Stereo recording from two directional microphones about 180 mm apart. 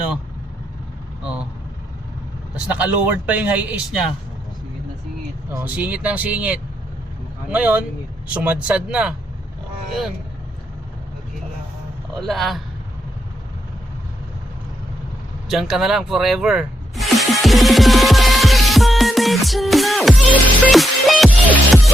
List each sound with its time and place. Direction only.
1.2 s vehicle: 5° right (ahead or behind)
2.6 s speech: 5° right (ahead or behind)
5.5 s speech: 10° right (ahead or behind)
12.2 s a man's voice: centre (ahead or behind)
15.4 s speech: centre (ahead or behind)